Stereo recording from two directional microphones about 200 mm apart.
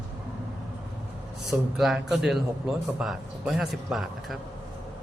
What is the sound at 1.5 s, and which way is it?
A man's voice, centre (ahead or behind).